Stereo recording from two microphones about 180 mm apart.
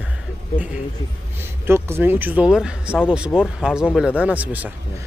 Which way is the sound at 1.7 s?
15° right (ahead or behind).